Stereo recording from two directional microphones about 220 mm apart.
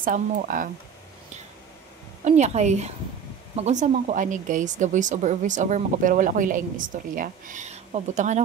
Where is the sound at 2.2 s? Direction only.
30° right (ahead or behind).